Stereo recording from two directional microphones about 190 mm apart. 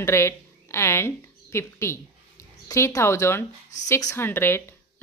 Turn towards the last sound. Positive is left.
turn(degrees=10)  # may be behind; listen again after turning